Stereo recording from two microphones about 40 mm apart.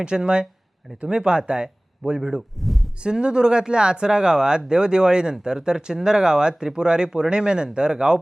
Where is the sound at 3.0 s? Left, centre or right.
Right.